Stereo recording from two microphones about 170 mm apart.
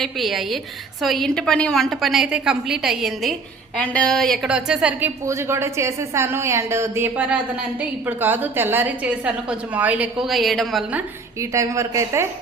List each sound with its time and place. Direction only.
0.0 s a woman's voice: centre (ahead or behind)
11.3 s a woman's voice: 20° right (ahead or behind)